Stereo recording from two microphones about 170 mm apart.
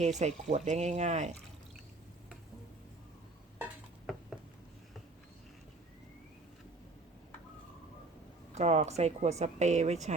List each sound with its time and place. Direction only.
0.0 s a woman's voice: 40° right (ahead or behind)
8.5 s a woman's voice: 40° right (ahead or behind)